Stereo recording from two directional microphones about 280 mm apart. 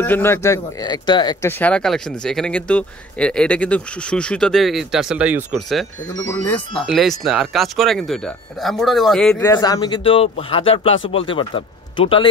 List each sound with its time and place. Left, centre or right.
0.0 s speech: centre
9.4 s speech: centre